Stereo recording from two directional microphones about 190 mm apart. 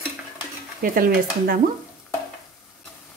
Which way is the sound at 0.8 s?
50° right (ahead or behind).